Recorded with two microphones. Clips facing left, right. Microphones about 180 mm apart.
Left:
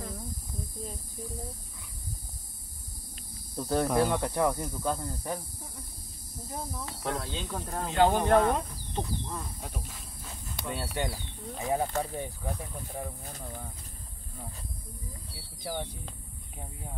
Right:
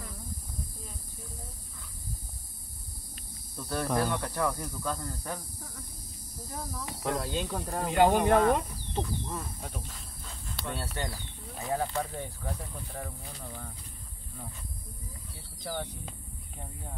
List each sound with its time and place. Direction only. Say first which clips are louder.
3.5 s speech: left 6 dB; 30° left (ahead or behind)
3.8 s speech: left 2 dB; 15° left (ahead or behind)
6.5 s speech: left 1 dB; 20° left (ahead or behind)
7.0 s speech: right 3 dB; centre (ahead or behind)
7.8 s speech: right 1 dB; 15° right (ahead or behind)
8.4 s speech: right 1 dB; centre (ahead or behind)
15.6 s speech: left 1 dB; 10° left (ahead or behind)